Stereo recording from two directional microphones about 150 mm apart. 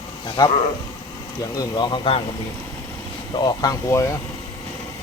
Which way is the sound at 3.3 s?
25° left (ahead or behind).